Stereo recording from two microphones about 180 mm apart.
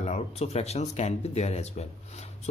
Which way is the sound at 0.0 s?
35° left (ahead or behind).